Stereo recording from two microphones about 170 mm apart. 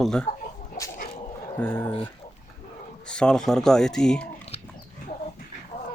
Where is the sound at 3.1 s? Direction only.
5° left (ahead or behind).